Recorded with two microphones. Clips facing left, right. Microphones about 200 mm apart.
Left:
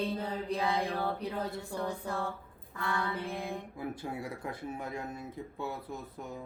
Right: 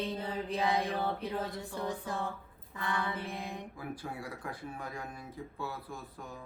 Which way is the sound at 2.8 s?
20° right (ahead or behind).